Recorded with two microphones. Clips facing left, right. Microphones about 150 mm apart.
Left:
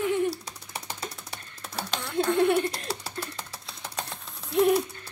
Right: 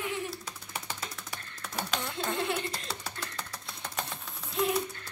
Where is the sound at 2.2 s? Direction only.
50° left (ahead or behind).